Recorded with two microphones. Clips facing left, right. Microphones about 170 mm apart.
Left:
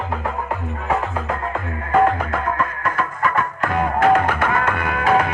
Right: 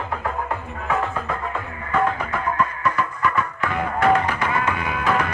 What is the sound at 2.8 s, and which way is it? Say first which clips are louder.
Music: left 1 dB; 50° left (ahead or behind).